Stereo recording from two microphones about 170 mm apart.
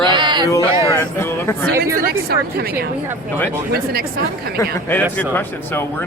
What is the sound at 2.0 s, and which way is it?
Speech, 65° right (ahead or behind).